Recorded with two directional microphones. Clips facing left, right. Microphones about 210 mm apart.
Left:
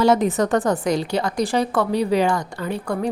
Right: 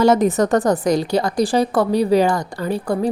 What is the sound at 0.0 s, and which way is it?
A woman's voice, 45° right (ahead or behind).